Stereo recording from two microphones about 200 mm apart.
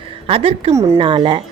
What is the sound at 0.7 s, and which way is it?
Speech, 15° right (ahead or behind).